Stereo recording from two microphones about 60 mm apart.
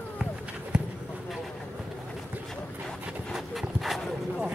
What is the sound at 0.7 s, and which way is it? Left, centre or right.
Clip-clop, centre.